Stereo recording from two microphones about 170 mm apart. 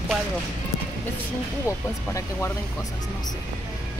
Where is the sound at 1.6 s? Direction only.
15° left (ahead or behind).